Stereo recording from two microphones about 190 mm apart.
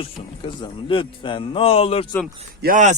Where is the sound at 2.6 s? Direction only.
40° right (ahead or behind).